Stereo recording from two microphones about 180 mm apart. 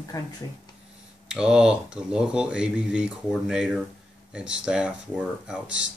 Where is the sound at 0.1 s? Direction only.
20° left (ahead or behind).